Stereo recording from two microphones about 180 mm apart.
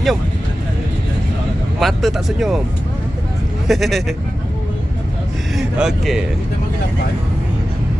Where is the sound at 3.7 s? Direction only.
Centre (ahead or behind).